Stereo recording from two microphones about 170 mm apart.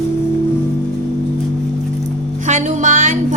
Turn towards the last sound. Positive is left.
turn(degrees=-50)  # may be behind; listen again after turning